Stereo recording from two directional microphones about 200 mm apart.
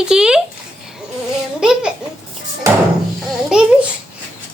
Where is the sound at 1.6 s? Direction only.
5° right (ahead or behind).